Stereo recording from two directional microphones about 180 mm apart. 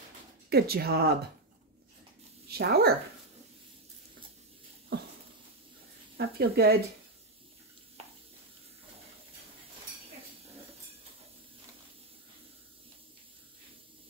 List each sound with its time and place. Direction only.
0.5 s speech: 60° right (ahead or behind)
2.4 s dog: 60° right (ahead or behind)
6.1 s speech: 60° right (ahead or behind)
8.0 s sizzle: 35° right (ahead or behind)